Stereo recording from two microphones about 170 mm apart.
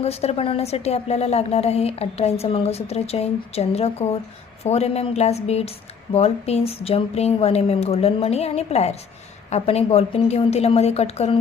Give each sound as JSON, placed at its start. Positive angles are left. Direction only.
{"t": 0.0, "sound": "a woman's voice", "side_deg": 40}